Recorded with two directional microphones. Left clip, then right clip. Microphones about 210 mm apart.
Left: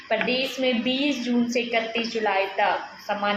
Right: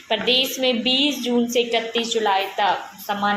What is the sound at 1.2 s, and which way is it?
Speech, centre (ahead or behind).